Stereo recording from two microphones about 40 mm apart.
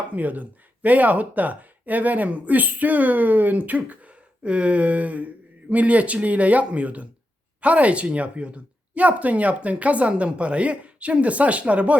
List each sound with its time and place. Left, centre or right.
0.1 s speech: right
4.4 s speech: right